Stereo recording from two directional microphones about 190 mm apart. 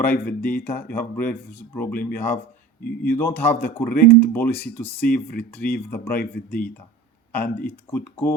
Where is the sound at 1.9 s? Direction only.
50° left (ahead or behind).